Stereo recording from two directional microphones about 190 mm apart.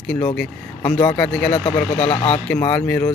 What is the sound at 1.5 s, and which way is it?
Speech, 30° left (ahead or behind).